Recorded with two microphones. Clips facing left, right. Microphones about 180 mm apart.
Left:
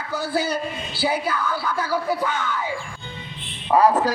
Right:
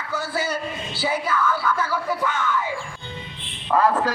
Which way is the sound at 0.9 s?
65° left (ahead or behind).